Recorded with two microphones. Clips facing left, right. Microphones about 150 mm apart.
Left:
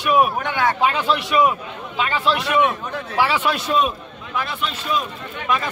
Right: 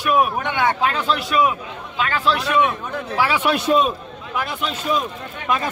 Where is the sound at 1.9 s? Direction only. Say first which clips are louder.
Even; 5° left (ahead or behind).